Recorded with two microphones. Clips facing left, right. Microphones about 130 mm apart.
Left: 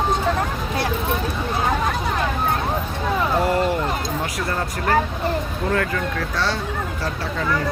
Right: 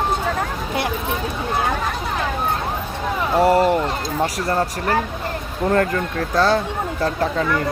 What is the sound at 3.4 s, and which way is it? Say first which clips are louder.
Speech: right 5 dB; 40° right (ahead or behind).